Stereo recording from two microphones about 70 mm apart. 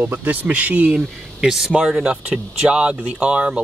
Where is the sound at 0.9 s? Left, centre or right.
Centre.